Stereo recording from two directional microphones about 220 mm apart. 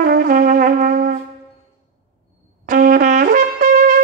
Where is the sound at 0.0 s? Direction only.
40° right (ahead or behind).